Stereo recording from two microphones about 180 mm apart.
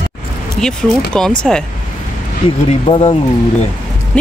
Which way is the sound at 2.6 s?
30° left (ahead or behind).